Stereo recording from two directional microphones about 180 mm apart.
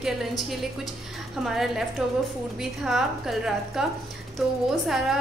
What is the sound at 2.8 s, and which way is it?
A woman's voice, centre (ahead or behind).